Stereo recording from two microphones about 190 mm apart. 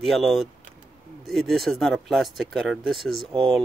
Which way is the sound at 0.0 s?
Centre (ahead or behind).